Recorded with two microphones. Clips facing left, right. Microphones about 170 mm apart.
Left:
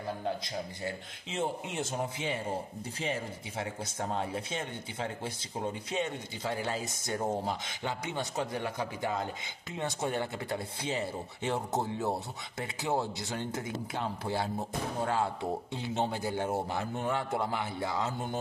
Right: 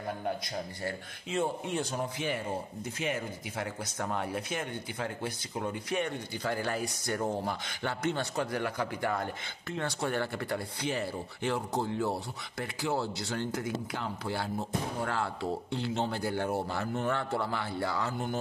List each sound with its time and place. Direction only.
0.8 s speech: 20° left (ahead or behind)